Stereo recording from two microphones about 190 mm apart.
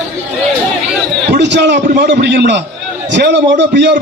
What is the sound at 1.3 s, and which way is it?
A man's voice, 65° right (ahead or behind).